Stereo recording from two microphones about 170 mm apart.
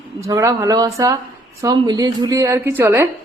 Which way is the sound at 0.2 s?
20° right (ahead or behind).